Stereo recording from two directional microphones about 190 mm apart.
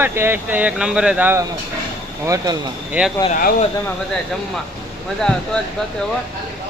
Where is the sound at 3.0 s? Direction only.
5° right (ahead or behind).